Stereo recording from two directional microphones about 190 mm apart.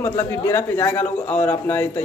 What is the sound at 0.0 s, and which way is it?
A man's voice, 15° left (ahead or behind).